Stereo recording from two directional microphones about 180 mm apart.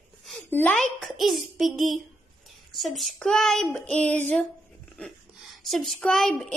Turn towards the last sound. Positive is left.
turn(degrees=5)  # may be behind; listen again after turning